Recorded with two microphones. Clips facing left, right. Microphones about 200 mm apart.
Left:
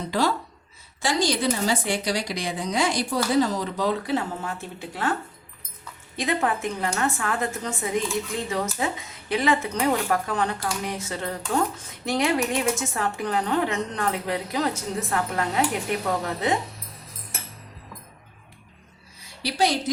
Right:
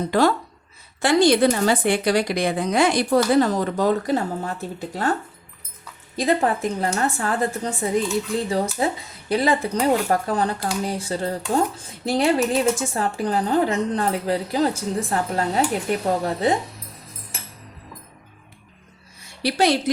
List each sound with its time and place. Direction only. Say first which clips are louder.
0.1 s a woman's voice: right 4 dB; 55° right (ahead or behind)
6.1 s speech: right 5 dB; 35° right (ahead or behind)